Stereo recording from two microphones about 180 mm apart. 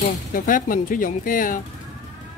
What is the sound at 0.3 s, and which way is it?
Speech, 50° left (ahead or behind).